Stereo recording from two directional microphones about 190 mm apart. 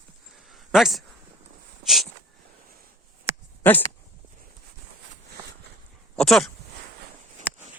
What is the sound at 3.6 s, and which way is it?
Speech, 10° left (ahead or behind).